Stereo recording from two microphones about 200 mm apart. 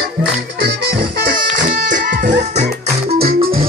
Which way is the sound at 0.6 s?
55° right (ahead or behind).